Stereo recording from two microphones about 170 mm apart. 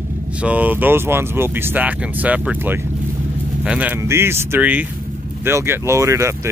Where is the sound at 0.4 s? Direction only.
10° right (ahead or behind).